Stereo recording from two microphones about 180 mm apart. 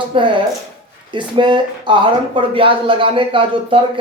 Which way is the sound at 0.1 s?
30° right (ahead or behind).